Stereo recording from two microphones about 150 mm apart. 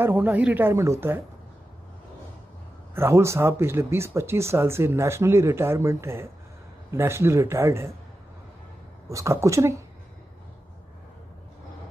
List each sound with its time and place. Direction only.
0.0 s speech: 15° right (ahead or behind)
2.9 s speech: 15° right (ahead or behind)
9.1 s a woman's voice: 20° right (ahead or behind)